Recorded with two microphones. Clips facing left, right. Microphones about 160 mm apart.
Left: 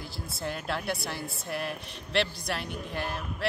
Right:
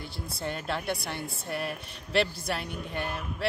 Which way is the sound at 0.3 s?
Centre (ahead or behind).